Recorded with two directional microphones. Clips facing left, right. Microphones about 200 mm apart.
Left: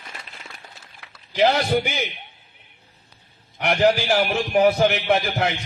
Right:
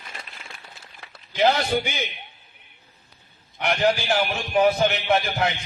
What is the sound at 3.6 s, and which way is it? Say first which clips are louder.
A man's voice: left 3 dB; 45° left (ahead or behind).